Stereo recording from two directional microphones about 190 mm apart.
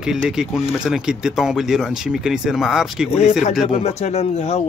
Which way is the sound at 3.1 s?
35° left (ahead or behind).